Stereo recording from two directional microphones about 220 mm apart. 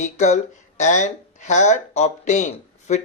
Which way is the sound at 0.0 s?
35° left (ahead or behind).